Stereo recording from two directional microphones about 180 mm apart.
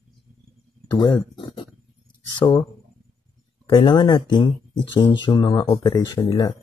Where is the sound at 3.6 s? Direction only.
25° left (ahead or behind).